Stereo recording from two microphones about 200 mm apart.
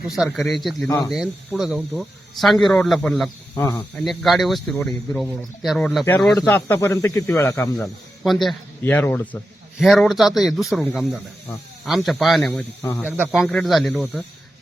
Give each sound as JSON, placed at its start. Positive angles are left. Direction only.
{"t": 0.1, "sound": "speech", "side_deg": 0}
{"t": 0.9, "sound": "speech", "side_deg": 15}
{"t": 1.1, "sound": "speech", "side_deg": 0}
{"t": 3.5, "sound": "speech", "side_deg": 15}
{"t": 8.2, "sound": "speech", "side_deg": 0}